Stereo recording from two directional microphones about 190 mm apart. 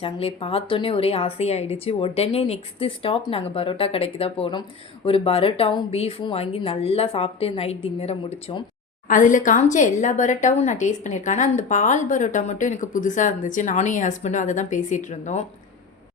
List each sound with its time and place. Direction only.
0.0 s a woman's voice: 30° left (ahead or behind)
9.0 s a woman's voice: 45° left (ahead or behind)